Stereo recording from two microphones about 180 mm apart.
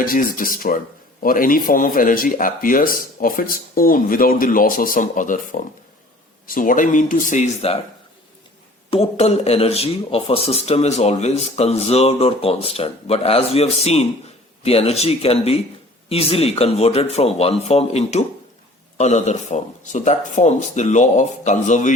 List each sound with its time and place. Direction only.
0.0 s speech: 50° left (ahead or behind)
8.9 s speech: 35° left (ahead or behind)